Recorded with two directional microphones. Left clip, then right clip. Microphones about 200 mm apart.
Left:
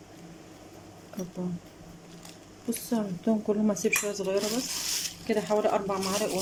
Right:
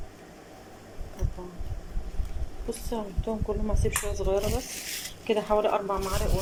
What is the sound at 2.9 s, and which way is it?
Speech, 10° left (ahead or behind).